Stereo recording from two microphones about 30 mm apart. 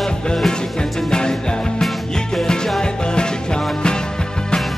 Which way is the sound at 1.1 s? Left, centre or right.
Left.